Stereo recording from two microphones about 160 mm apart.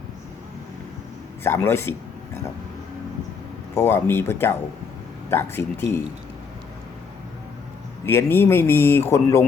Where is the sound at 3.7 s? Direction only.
15° left (ahead or behind).